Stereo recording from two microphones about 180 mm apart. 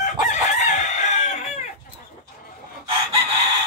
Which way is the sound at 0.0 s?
40° left (ahead or behind).